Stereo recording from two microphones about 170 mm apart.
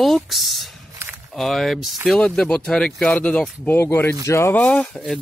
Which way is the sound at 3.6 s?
15° left (ahead or behind).